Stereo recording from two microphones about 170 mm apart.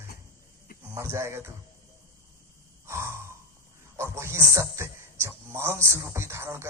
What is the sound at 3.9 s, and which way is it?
Speech, 15° right (ahead or behind).